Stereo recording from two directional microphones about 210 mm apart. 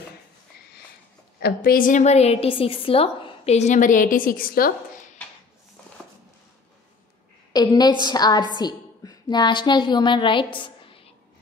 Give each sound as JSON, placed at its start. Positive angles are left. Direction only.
{"t": 1.4, "sound": "a woman's voice", "side_deg": 45}
{"t": 7.5, "sound": "a woman's voice", "side_deg": 20}